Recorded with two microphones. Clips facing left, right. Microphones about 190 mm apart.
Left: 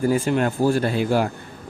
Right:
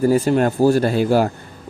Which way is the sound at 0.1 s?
40° right (ahead or behind).